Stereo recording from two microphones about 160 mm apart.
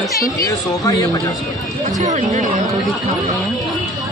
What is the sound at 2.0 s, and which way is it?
Speech, 50° right (ahead or behind).